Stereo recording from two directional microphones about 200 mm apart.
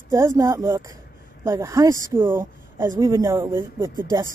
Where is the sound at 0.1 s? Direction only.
15° right (ahead or behind).